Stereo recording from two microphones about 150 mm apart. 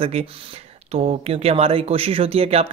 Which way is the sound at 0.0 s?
40° right (ahead or behind).